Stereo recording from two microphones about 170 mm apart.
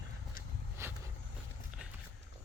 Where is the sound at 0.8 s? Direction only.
15° right (ahead or behind).